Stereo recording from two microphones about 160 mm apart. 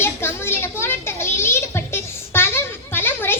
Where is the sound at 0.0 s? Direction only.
15° left (ahead or behind).